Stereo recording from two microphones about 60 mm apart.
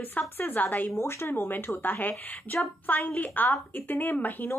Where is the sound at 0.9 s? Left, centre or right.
Left.